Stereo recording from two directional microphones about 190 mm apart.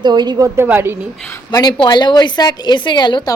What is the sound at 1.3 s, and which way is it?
A woman's voice, 20° left (ahead or behind).